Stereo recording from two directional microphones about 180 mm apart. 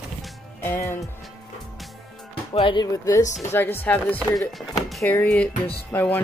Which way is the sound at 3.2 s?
40° left (ahead or behind).